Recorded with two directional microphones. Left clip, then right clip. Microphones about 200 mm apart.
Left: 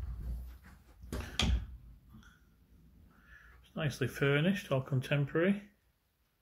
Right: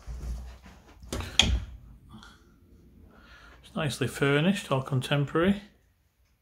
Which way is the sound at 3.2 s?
15° right (ahead or behind).